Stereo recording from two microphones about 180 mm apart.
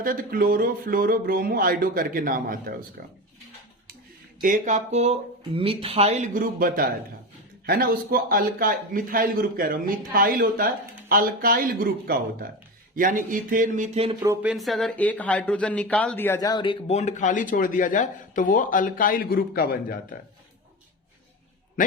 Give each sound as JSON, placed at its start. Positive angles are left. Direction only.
{"t": 0.0, "sound": "a man's voice", "side_deg": -50}
{"t": 4.4, "sound": "a man's voice", "side_deg": -50}
{"t": 14.2, "sound": "a sound", "side_deg": -15}
{"t": 14.5, "sound": "speech", "side_deg": 0}
{"t": 16.9, "sound": "speech", "side_deg": 40}